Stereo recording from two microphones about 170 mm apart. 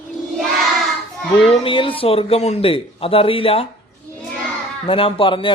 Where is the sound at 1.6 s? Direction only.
30° left (ahead or behind).